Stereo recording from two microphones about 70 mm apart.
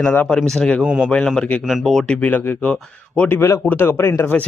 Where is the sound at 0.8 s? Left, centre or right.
Centre.